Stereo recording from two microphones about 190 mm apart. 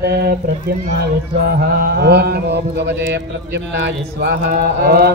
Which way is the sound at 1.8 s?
60° right (ahead or behind).